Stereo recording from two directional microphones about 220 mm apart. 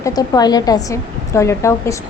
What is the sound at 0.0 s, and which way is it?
A woman's voice, 15° left (ahead or behind).